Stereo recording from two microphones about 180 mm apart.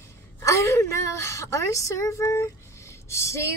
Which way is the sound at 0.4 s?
15° left (ahead or behind).